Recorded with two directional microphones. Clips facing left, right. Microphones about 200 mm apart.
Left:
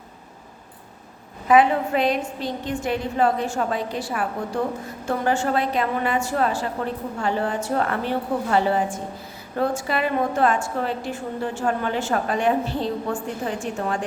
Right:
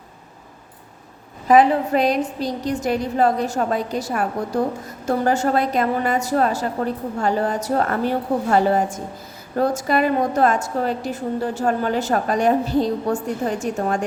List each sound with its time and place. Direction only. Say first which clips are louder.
1.5 s a woman's voice: right 3 dB; 40° right (ahead or behind)